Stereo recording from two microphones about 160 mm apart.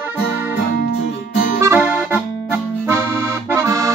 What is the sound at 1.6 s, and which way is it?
Accordion, 10° right (ahead or behind).